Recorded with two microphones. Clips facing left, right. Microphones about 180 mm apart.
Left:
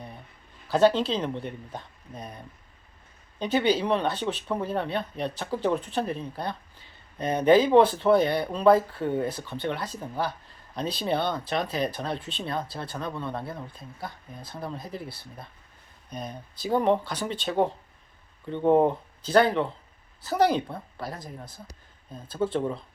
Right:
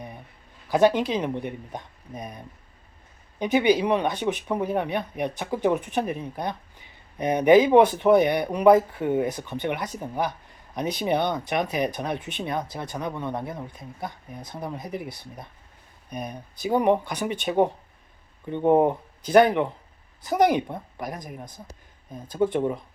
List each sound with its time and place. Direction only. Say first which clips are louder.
0.7 s speech: right 1 dB; 15° right (ahead or behind)